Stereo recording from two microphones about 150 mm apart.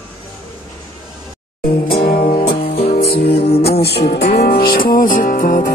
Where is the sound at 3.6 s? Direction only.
90° left.